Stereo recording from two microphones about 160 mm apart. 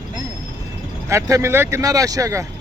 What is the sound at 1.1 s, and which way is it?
Speech, 20° right (ahead or behind).